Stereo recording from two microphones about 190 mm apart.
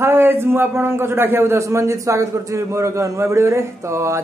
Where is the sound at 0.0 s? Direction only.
10° right (ahead or behind).